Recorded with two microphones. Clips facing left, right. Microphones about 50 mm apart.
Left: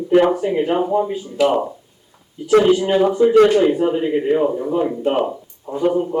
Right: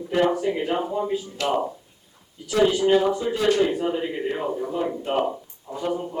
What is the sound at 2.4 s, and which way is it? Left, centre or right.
Speech, left.